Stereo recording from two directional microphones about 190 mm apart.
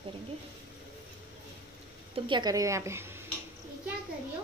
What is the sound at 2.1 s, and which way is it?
A woman's voice, 25° right (ahead or behind).